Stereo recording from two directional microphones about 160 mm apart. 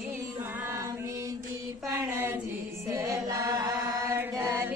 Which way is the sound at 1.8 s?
15° right (ahead or behind).